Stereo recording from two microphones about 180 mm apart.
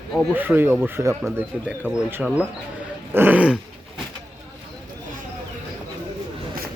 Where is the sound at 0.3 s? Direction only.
10° right (ahead or behind).